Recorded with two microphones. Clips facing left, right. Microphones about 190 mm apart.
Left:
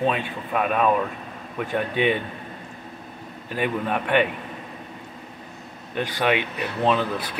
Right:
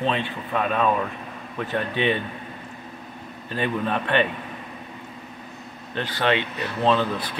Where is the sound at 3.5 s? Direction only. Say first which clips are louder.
Even; 10° left (ahead or behind).